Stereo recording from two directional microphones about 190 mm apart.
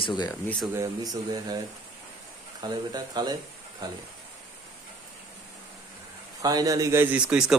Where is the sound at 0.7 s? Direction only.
20° right (ahead or behind).